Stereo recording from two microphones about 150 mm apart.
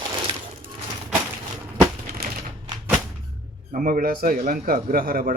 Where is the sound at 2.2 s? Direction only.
90° right.